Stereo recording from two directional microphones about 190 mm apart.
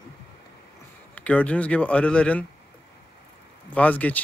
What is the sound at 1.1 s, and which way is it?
Speech, 5° left (ahead or behind).